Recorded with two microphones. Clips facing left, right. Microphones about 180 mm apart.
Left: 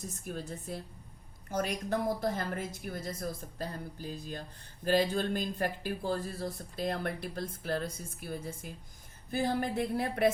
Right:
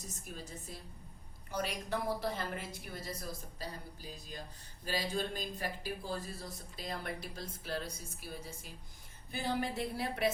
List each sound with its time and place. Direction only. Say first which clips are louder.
0.3 s a woman's voice: left 9 dB; 55° left (ahead or behind)
4.9 s a woman's voice: left 8 dB; 55° left (ahead or behind)